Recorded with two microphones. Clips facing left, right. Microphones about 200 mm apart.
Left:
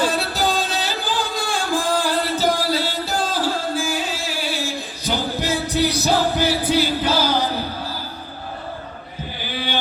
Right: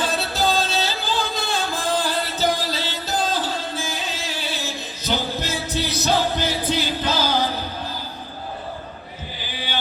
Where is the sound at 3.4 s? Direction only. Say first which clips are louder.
Left 4 dB; 10° left (ahead or behind).